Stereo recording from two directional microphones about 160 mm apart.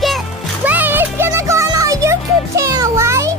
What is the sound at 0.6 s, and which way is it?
Music, 10° right (ahead or behind).